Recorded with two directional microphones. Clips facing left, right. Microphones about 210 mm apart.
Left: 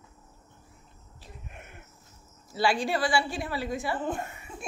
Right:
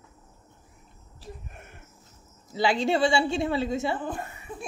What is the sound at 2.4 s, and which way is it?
A woman's voice, 20° right (ahead or behind).